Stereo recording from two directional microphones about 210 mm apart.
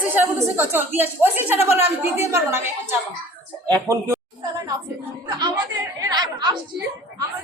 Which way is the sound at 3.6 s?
15° right (ahead or behind).